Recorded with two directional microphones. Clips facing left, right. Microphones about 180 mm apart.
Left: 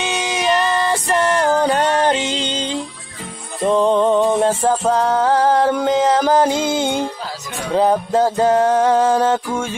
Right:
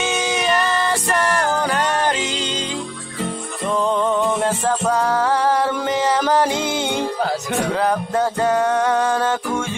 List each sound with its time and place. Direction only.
0.3 s music: 20° left (ahead or behind)
3.6 s music: 25° left (ahead or behind)
7.2 s music: 60° right (ahead or behind)
7.8 s music: 20° left (ahead or behind)